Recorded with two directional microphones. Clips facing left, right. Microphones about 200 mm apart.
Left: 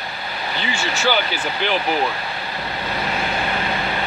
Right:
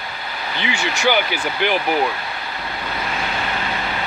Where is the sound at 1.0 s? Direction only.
15° right (ahead or behind).